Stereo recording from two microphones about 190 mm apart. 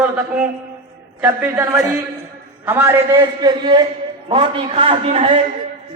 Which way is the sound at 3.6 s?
25° right (ahead or behind).